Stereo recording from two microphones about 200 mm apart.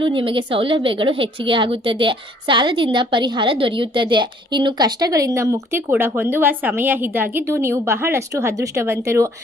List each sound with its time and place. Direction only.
0.0 s a woman's voice: 25° right (ahead or behind)